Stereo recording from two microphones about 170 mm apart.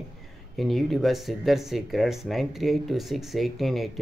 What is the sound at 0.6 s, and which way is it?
Speech, centre (ahead or behind).